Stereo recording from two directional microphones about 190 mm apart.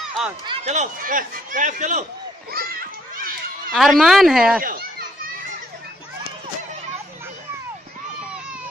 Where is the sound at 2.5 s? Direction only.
50° right (ahead or behind).